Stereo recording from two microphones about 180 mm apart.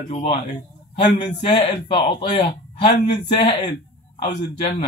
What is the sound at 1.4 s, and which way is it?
A man's voice, 25° left (ahead or behind).